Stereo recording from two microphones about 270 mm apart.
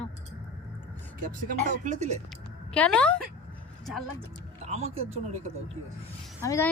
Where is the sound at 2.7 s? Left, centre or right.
Centre.